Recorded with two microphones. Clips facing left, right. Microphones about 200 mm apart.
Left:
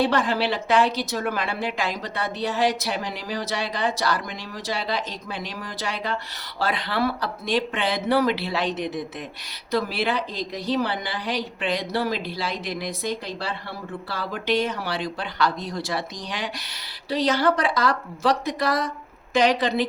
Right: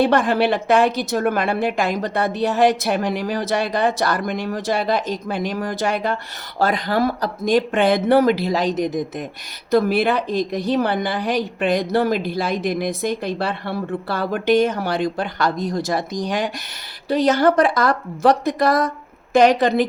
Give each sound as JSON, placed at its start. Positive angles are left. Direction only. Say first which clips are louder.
{"t": 0.0, "sound": "a woman's voice", "louder": "right 5 dB", "side_deg": -50}